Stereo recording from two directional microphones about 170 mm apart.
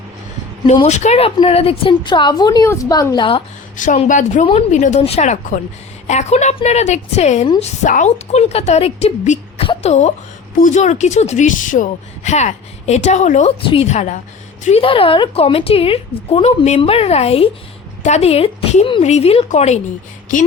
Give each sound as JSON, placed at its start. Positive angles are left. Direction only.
{"t": 0.7, "sound": "a woman's voice", "side_deg": 40}
{"t": 3.8, "sound": "a woman's voice", "side_deg": 50}
{"t": 13.6, "sound": "a woman's voice", "side_deg": 35}